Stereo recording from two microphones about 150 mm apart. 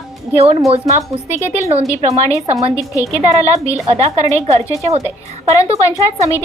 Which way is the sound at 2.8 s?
20° left (ahead or behind).